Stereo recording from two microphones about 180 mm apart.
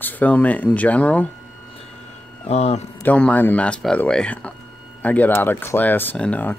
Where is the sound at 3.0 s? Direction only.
10° left (ahead or behind).